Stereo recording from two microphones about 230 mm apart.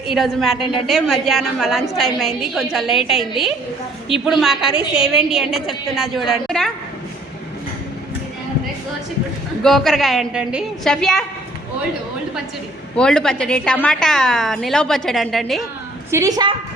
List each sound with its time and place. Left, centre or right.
0.1 s a woman's voice: centre
9.6 s a woman's voice: centre
13.0 s a woman's voice: centre
16.1 s a woman's voice: centre